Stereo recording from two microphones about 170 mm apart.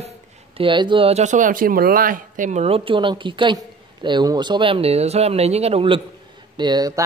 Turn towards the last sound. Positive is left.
turn(degrees=-20)  # may be behind; listen again after turning